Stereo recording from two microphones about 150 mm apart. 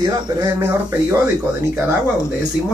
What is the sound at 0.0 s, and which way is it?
Speech, 25° right (ahead or behind).